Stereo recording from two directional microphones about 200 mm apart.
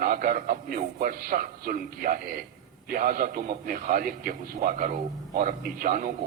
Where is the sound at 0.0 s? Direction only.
45° right (ahead or behind).